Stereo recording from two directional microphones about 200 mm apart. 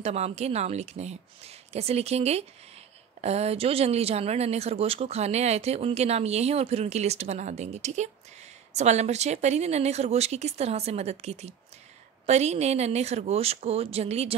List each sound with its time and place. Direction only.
0.0 s speech: 30° right (ahead or behind)